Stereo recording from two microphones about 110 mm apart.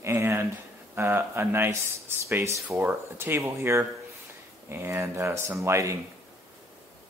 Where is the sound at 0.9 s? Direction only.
20° right (ahead or behind).